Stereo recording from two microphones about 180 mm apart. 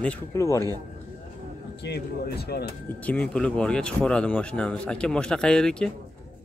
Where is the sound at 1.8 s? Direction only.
65° left (ahead or behind).